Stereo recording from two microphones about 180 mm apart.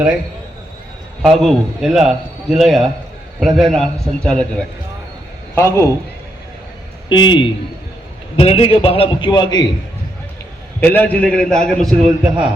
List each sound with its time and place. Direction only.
1.2 s a man's voice: centre (ahead or behind)
7.1 s a man's voice: 25° left (ahead or behind)
10.8 s a man's voice: 10° left (ahead or behind)